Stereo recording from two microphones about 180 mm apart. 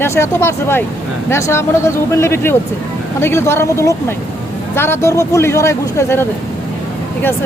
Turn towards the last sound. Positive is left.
turn(degrees=15)  # may be behind; listen again after turning